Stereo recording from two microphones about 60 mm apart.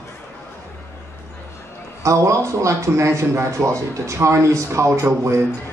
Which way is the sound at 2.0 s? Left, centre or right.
Right.